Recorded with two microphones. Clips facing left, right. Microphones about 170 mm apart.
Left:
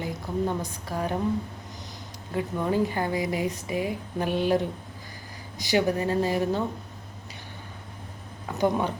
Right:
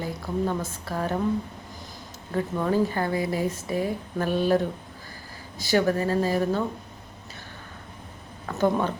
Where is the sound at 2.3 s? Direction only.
15° left (ahead or behind).